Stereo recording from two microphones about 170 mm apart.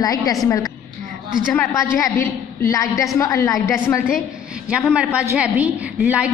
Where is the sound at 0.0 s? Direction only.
20° left (ahead or behind).